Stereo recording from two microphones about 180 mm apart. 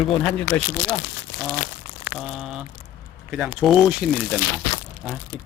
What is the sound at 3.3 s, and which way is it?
Speech, 5° right (ahead or behind).